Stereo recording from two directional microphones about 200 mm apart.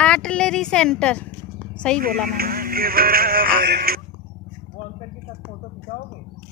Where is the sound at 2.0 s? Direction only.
50° right (ahead or behind).